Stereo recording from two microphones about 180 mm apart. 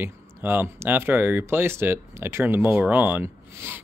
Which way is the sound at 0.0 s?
10° right (ahead or behind).